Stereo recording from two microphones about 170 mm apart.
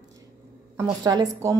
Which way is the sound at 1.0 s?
25° right (ahead or behind).